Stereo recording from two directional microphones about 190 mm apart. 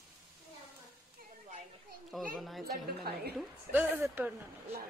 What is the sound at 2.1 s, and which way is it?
A woman's voice, centre (ahead or behind).